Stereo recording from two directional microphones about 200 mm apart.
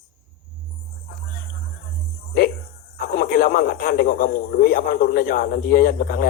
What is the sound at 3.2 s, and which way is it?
A man's voice, 45° left (ahead or behind).